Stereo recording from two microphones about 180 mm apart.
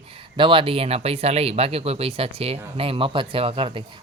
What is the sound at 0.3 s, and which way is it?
A man's voice, 30° right (ahead or behind).